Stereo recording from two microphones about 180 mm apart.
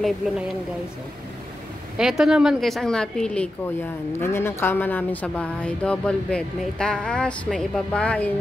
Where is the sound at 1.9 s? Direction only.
Centre (ahead or behind).